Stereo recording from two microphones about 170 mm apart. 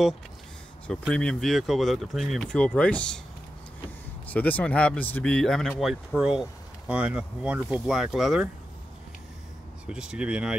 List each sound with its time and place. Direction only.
1.1 s speech: 5° left (ahead or behind)
4.3 s speech: 10° left (ahead or behind)
9.8 s speech: 5° right (ahead or behind)